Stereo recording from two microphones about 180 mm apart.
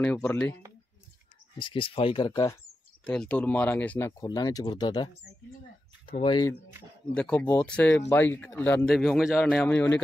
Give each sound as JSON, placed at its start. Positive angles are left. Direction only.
{"t": 0.0, "sound": "speech", "side_deg": 10}
{"t": 1.6, "sound": "speech", "side_deg": 30}
{"t": 3.1, "sound": "speech", "side_deg": 5}
{"t": 6.2, "sound": "speech", "side_deg": 25}
{"t": 7.2, "sound": "speech", "side_deg": 10}